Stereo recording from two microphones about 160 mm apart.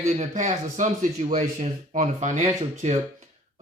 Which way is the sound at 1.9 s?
45° right (ahead or behind).